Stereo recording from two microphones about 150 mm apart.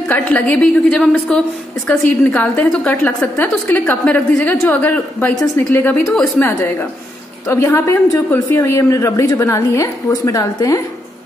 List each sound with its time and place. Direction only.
0.1 s a woman's voice: 10° left (ahead or behind)